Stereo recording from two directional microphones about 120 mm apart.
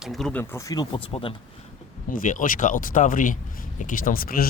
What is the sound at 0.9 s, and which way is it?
Speech, 50° left (ahead or behind).